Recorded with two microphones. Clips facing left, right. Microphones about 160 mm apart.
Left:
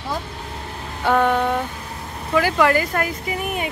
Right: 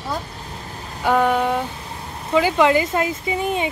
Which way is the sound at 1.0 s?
10° right (ahead or behind).